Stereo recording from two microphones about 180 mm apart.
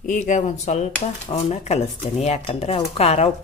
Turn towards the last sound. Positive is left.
turn(degrees=35)  # may be behind; listen again after turning